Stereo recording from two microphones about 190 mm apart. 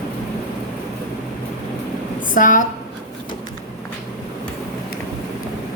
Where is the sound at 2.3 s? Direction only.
45° left (ahead or behind).